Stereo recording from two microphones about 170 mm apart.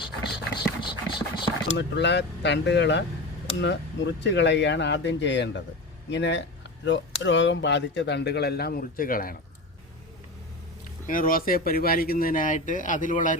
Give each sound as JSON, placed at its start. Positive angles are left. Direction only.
{"t": 0.8, "sound": "engine", "side_deg": 30}
{"t": 1.6, "sound": "speech", "side_deg": 90}
{"t": 11.0, "sound": "speech", "side_deg": 55}